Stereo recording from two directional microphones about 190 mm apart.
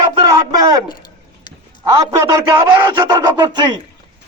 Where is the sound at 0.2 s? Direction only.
20° right (ahead or behind).